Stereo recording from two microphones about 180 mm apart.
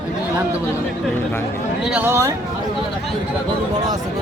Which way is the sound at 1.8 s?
5° right (ahead or behind).